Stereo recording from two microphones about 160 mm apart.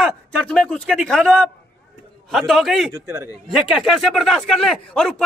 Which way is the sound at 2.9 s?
15° right (ahead or behind).